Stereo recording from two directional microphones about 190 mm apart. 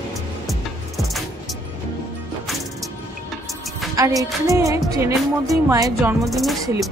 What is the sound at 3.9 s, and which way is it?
Music, 20° right (ahead or behind).